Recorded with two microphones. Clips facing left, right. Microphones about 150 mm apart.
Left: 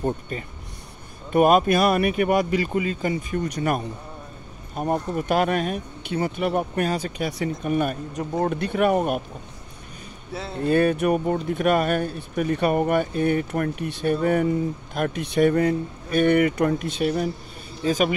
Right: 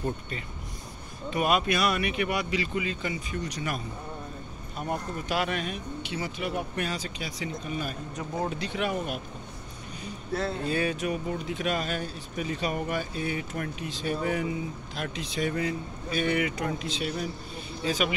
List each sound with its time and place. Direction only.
1.3 s speech: 45° left (ahead or behind)
10.6 s speech: 55° left (ahead or behind)